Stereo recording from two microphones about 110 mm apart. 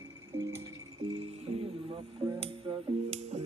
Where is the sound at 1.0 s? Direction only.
60° right (ahead or behind).